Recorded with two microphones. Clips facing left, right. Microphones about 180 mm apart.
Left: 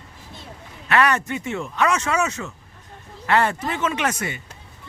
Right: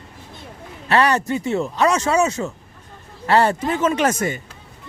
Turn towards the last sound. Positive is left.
turn(degrees=-45)  # may be behind; listen again after turning